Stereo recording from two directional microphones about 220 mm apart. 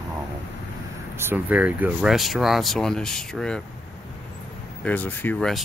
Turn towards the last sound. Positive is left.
turn(degrees=0)  # may be behind; listen again after turning